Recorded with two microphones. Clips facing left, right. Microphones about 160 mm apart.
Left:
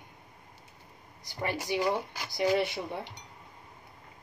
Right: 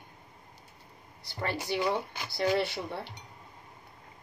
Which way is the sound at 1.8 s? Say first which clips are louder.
Even; 10° left (ahead or behind).